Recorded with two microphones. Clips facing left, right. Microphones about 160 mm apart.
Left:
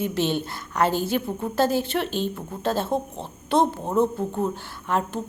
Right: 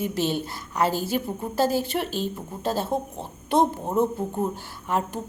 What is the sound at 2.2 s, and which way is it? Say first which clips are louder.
Speech: left 2 dB; 10° right (ahead or behind).